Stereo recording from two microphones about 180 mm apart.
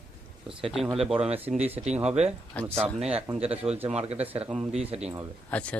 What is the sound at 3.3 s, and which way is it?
Speech, 35° right (ahead or behind).